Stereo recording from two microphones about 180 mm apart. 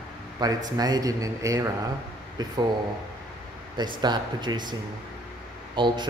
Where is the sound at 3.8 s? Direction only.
25° right (ahead or behind).